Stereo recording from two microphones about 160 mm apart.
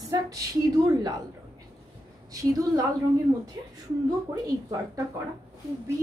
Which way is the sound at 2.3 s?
20° right (ahead or behind).